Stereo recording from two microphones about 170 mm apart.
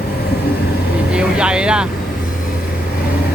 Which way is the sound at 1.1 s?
5° right (ahead or behind).